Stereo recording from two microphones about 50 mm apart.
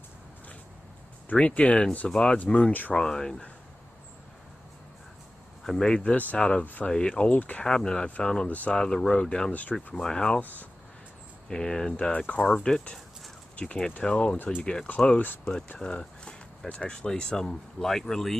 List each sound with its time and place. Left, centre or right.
1.3 s speech: left
2.9 s speech: centre
5.6 s speech: centre
6.6 s speech: left
6.9 s speech: centre
7.2 s speech: left
7.6 s speech: centre
8.5 s speech: left
8.7 s speech: centre
9.5 s speech: left
9.9 s speech: centre
11.4 s speech: centre